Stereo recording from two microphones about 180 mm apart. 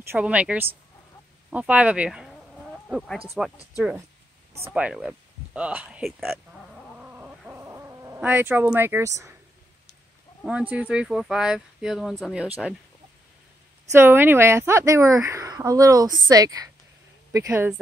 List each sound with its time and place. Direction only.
0.0 s a woman's voice: 10° right (ahead or behind)
7.0 s cat: 10° right (ahead or behind)
10.4 s speech: 5° right (ahead or behind)
13.9 s a woman's voice: 10° right (ahead or behind)